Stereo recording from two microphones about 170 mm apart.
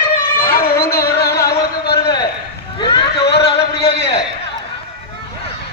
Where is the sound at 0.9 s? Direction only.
65° left (ahead or behind).